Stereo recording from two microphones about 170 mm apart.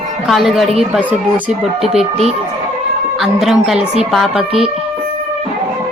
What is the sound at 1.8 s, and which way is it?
Speech, 40° right (ahead or behind).